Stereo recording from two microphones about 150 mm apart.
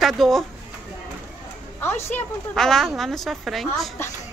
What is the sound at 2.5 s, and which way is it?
Speech, 5° left (ahead or behind).